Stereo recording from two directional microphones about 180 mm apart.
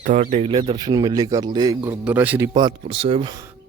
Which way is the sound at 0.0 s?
45° right (ahead or behind).